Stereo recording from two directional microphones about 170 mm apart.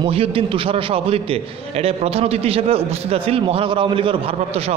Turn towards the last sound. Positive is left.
turn(degrees=-35)  # may be behind; listen again after turning